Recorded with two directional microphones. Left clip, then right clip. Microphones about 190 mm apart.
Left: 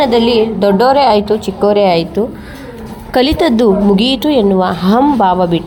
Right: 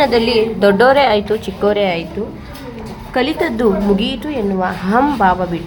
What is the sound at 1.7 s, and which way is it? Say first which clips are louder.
Speech: left 6 dB; 15° left (ahead or behind).